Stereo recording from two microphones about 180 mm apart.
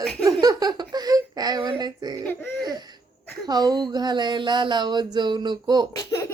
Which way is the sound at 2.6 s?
20° right (ahead or behind).